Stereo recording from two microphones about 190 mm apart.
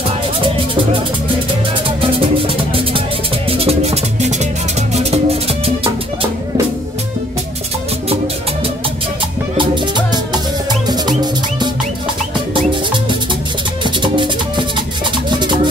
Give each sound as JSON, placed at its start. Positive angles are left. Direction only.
{"t": 1.9, "sound": "music", "side_deg": -30}
{"t": 9.6, "sound": "music", "side_deg": -25}
{"t": 13.8, "sound": "music", "side_deg": -25}